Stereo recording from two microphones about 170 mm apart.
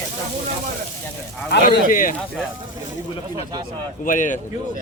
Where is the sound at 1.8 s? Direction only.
55° left (ahead or behind).